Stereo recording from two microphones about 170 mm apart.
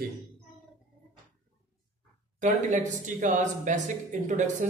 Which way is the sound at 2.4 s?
45° right (ahead or behind).